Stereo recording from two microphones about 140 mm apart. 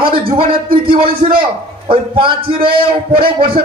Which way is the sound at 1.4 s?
35° right (ahead or behind).